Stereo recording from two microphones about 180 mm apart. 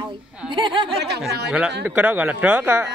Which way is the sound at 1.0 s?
65° right (ahead or behind).